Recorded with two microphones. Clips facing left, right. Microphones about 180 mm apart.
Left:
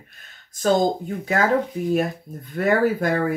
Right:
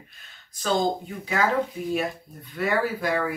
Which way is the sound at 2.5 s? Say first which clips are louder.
Left 6 dB; 50° left (ahead or behind).